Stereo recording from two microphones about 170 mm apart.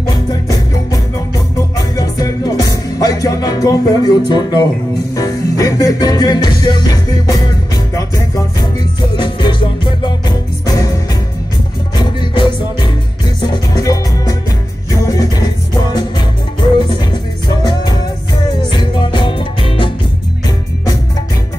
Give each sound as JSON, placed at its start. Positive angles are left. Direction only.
{"t": 0.0, "sound": "music", "side_deg": 25}
{"t": 4.3, "sound": "speech", "side_deg": 25}
{"t": 5.1, "sound": "music", "side_deg": 20}
{"t": 9.1, "sound": "music", "side_deg": 25}
{"t": 12.0, "sound": "music", "side_deg": 25}
{"t": 16.7, "sound": "music", "side_deg": 25}